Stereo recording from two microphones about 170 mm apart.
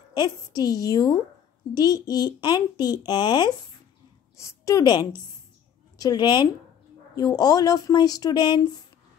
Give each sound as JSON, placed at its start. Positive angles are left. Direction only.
{"t": 0.1, "sound": "speech", "side_deg": 25}